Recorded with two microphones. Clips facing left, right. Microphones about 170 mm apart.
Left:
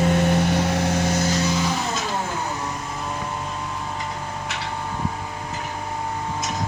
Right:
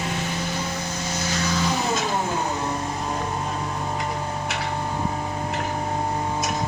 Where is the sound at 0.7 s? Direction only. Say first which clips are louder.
Left 8 dB; 80° left.